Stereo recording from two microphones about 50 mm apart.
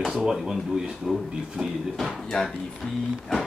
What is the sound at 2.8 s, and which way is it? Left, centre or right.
Speech, left.